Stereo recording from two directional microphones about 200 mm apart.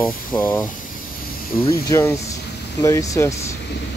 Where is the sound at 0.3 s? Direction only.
10° left (ahead or behind).